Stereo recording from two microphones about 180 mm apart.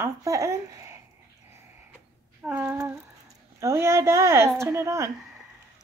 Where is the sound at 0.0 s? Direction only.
15° right (ahead or behind).